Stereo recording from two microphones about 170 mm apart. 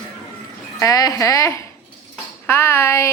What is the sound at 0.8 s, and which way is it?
A woman's voice, 20° left (ahead or behind).